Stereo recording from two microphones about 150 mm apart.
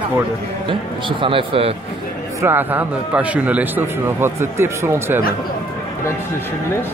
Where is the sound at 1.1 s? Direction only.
35° right (ahead or behind).